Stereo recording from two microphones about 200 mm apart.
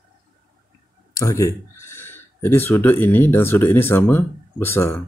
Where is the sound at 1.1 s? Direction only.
15° left (ahead or behind).